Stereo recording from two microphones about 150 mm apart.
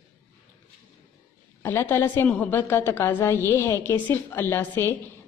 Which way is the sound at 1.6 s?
15° left (ahead or behind).